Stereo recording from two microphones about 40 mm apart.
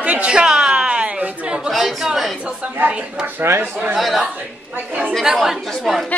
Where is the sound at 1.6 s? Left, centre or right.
Centre.